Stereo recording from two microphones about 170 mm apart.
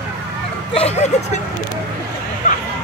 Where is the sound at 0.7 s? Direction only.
40° left (ahead or behind).